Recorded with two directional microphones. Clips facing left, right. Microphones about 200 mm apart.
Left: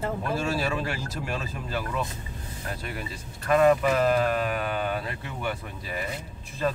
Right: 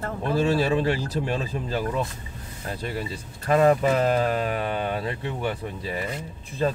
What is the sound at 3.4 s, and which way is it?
Speech, 30° right (ahead or behind).